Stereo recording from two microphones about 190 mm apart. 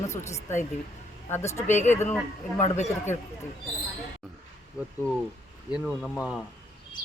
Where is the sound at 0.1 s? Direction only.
15° left (ahead or behind).